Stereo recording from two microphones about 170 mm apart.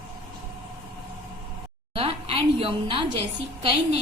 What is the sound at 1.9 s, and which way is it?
A woman's voice, 35° right (ahead or behind).